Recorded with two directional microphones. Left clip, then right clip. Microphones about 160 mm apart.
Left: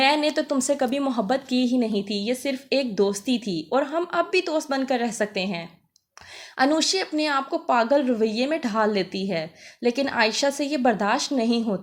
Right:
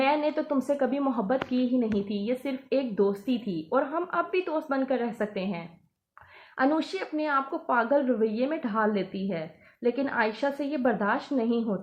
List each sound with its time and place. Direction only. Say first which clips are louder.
0.0 s a woman's voice: left 5 dB; 25° left (ahead or behind)